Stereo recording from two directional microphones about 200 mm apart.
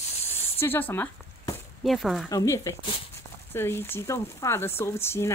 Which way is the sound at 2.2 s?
15° left (ahead or behind).